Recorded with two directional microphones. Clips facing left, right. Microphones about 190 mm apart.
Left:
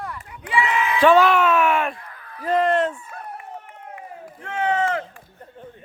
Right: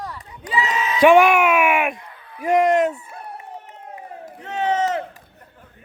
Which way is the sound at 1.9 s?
20° right (ahead or behind).